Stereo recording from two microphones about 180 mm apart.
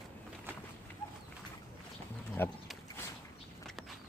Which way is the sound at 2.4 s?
10° left (ahead or behind).